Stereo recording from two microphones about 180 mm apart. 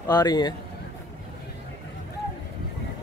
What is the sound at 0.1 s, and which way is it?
Speech, 25° left (ahead or behind).